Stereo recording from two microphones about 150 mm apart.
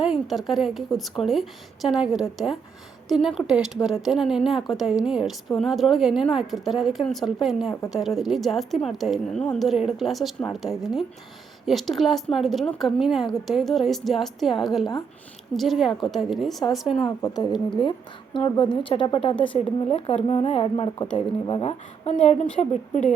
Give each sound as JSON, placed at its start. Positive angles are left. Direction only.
{"t": 0.0, "sound": "a woman's voice", "side_deg": 0}
{"t": 17.2, "sound": "speech", "side_deg": 25}